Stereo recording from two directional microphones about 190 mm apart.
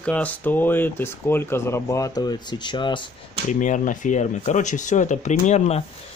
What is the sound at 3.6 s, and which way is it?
Speech, 40° left (ahead or behind).